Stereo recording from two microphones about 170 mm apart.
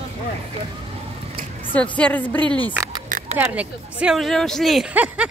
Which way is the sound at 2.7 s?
20° right (ahead or behind).